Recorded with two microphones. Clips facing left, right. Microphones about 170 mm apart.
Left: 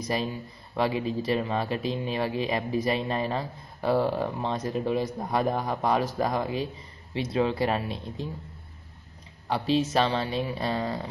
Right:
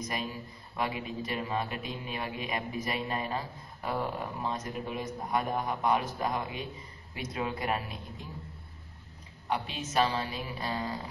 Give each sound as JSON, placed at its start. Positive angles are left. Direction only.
{"t": 0.0, "sound": "a man's voice", "side_deg": 30}
{"t": 9.5, "sound": "a man's voice", "side_deg": 35}